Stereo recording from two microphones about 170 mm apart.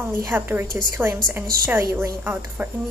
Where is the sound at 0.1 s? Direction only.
15° right (ahead or behind).